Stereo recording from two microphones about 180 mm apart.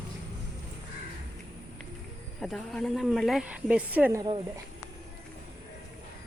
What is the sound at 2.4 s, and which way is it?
A woman's voice, centre (ahead or behind).